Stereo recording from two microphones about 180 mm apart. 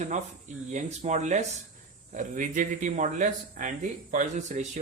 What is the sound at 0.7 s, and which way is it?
Speech, 40° right (ahead or behind).